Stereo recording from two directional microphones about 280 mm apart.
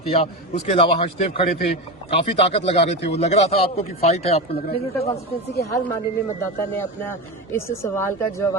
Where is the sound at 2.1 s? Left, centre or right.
Centre.